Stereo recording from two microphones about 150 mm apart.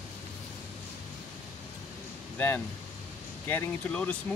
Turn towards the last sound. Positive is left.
turn(degrees=10)  # may be behind; listen again after turning